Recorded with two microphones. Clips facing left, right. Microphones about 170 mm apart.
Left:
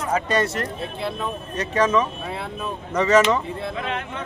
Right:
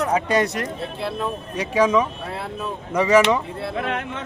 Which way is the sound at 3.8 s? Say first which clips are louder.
Right 5 dB; 55° right (ahead or behind).